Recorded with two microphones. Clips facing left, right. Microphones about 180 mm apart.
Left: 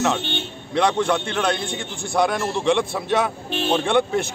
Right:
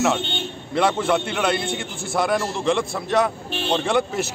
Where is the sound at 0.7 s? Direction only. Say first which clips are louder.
Even; 5° right (ahead or behind).